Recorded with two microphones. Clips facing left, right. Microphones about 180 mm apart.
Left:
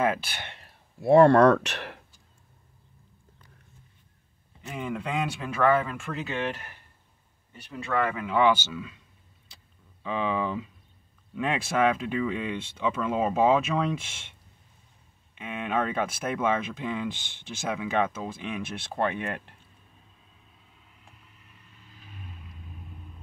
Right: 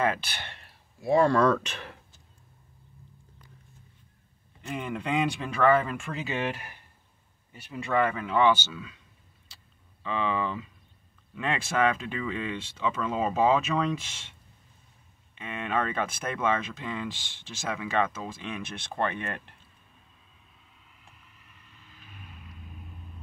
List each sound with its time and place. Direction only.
0.0 s speech: 10° left (ahead or behind)
1.0 s speech: 65° left (ahead or behind)
4.6 s speech: centre (ahead or behind)
10.0 s speech: 10° left (ahead or behind)
15.3 s speech: 10° left (ahead or behind)